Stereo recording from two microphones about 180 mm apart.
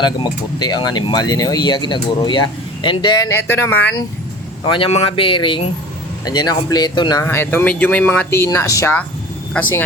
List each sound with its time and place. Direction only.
0.0 s speech: 25° left (ahead or behind)
4.6 s speech: 30° left (ahead or behind); by 9.8 s 10° left (ahead or behind)